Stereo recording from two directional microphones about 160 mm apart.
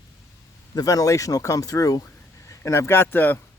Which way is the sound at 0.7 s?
20° left (ahead or behind).